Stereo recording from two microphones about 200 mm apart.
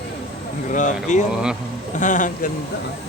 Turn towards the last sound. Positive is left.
turn(degrees=40)  # may be behind; listen again after turning